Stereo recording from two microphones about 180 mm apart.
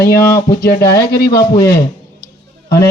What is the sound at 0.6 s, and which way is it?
Speech, 55° left (ahead or behind).